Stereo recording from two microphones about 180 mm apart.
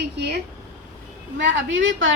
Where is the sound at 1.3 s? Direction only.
90° right.